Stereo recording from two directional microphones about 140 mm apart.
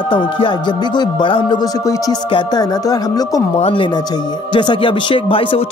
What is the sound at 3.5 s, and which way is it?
Speech, 40° left (ahead or behind).